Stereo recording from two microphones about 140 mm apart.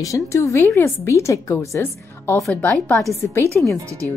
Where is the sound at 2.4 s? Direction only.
5° left (ahead or behind).